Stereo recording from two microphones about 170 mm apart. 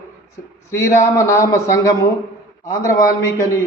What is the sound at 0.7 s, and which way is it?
A man's voice, 15° left (ahead or behind).